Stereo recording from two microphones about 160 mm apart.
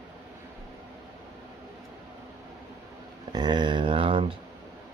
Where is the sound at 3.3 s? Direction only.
25° right (ahead or behind).